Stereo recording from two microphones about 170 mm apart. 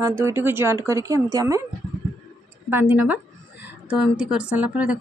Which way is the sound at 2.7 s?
10° right (ahead or behind).